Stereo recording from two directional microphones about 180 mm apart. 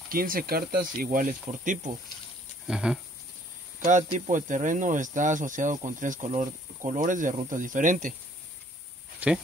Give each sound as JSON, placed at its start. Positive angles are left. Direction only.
{"t": 0.1, "sound": "speech", "side_deg": -50}
{"t": 2.6, "sound": "a sound", "side_deg": -5}
{"t": 3.8, "sound": "speech", "side_deg": -45}
{"t": 9.2, "sound": "speech", "side_deg": -5}